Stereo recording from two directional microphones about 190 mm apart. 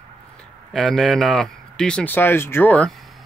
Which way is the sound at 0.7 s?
Centre (ahead or behind).